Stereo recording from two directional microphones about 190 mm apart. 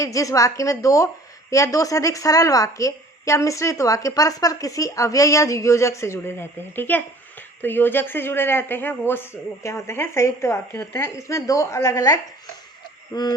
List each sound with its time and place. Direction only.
0.0 s a woman's voice: 15° left (ahead or behind)
13.1 s owl: 20° left (ahead or behind)